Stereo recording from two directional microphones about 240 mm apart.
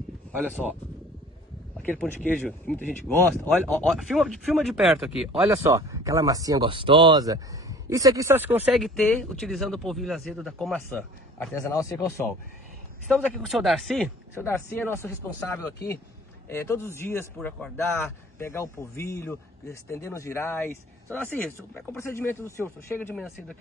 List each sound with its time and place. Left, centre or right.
0.3 s speech: centre
1.8 s speech: centre
13.1 s a man's voice: centre